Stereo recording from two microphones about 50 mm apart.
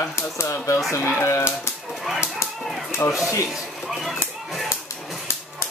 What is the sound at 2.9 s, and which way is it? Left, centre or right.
Speech, left.